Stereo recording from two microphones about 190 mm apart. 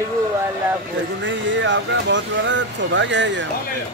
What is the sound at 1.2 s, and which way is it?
Speech, 75° right (ahead or behind).